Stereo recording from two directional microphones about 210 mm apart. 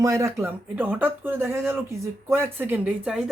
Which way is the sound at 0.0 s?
15° right (ahead or behind).